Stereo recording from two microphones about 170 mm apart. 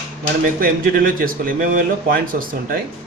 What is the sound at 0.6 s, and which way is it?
Speech, 55° right (ahead or behind).